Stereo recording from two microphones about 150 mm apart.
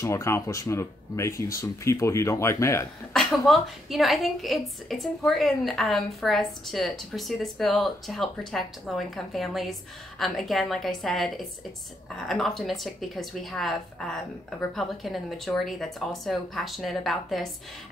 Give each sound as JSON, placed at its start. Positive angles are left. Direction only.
{"t": 0.0, "sound": "speech", "side_deg": 20}
{"t": 3.1, "sound": "a woman's voice", "side_deg": 0}